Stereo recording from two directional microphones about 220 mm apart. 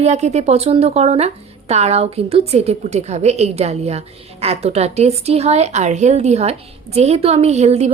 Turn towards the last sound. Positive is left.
turn(degrees=-30)  # may be behind; listen again after turning